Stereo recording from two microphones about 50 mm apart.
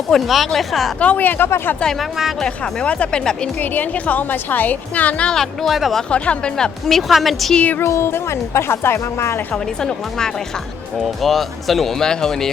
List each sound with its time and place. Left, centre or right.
0.1 s a woman's voice: centre
0.9 s a woman's voice: left
2.0 s a woman's voice: centre
2.4 s speech: left
3.6 s a woman's voice: left
5.3 s speech: centre
5.7 s a woman's voice: centre
6.1 s speech: left
6.8 s a woman's voice: centre
7.9 s a woman's voice: left
9.8 s speech: centre